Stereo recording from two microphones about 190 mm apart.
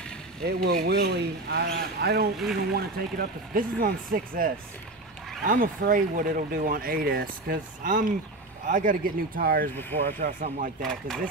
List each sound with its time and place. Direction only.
0.4 s speech: 55° right (ahead or behind)
10.8 s speech: 5° left (ahead or behind)